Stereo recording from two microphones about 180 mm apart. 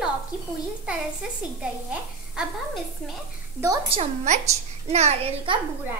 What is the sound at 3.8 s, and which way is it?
A child's voice, 35° right (ahead or behind).